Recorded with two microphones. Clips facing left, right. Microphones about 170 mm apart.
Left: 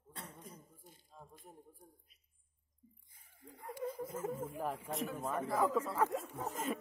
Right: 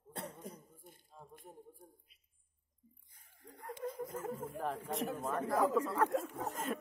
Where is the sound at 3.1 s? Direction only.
Centre (ahead or behind).